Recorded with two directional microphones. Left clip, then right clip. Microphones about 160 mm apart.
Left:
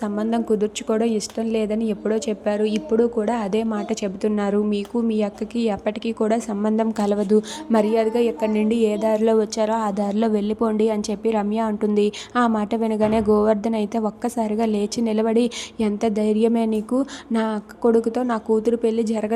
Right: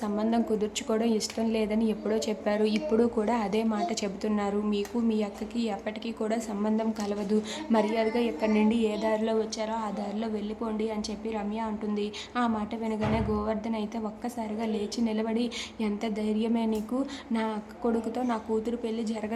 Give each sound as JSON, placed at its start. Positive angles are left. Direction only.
{"t": 0.0, "sound": "a woman's voice", "side_deg": 35}